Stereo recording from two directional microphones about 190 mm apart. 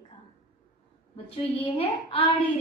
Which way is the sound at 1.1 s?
30° left (ahead or behind).